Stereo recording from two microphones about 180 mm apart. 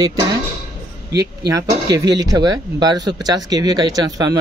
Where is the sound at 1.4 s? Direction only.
20° right (ahead or behind).